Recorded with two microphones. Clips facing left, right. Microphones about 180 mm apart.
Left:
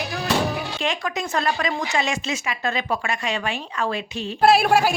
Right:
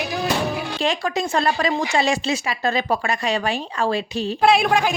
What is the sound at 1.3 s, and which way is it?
Speech, 35° right (ahead or behind).